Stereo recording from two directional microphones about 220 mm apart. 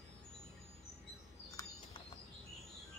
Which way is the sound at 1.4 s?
15° left (ahead or behind).